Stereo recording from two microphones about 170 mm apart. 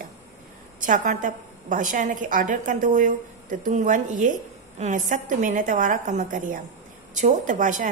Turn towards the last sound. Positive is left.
turn(degrees=-50)  # may be behind; listen again after turning